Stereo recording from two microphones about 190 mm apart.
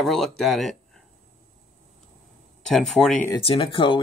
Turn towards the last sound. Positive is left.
turn(degrees=25)  # may be behind; listen again after turning